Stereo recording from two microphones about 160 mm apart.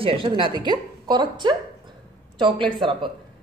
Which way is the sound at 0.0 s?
35° right (ahead or behind).